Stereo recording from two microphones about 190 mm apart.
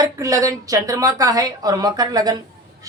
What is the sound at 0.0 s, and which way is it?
A woman's voice, 15° right (ahead or behind).